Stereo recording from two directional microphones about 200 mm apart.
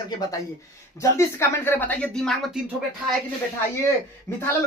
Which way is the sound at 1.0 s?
15° left (ahead or behind).